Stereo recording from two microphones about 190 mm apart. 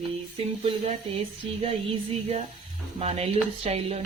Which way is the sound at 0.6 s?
30° right (ahead or behind).